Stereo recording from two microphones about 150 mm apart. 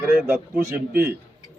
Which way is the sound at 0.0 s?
10° right (ahead or behind).